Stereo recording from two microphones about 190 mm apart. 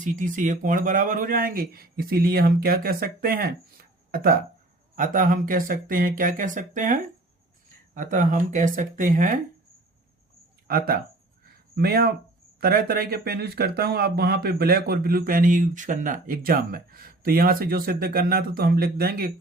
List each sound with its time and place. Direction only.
0.0 s speech: 45° right (ahead or behind)
10.7 s speech: 50° right (ahead or behind)